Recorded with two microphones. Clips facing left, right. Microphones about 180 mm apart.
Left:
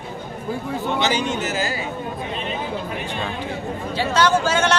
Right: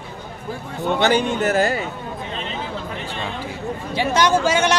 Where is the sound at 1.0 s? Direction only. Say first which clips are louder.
Right 7 dB; 55° right (ahead or behind).